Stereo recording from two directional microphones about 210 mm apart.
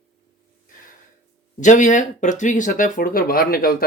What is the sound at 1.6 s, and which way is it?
Speech, 35° left (ahead or behind).